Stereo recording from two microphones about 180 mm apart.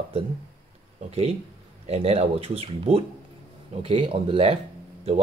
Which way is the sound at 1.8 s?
35° right (ahead or behind).